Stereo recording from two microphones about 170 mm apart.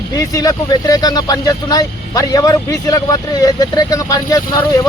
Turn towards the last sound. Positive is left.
turn(degrees=20)  # may be behind; listen again after turning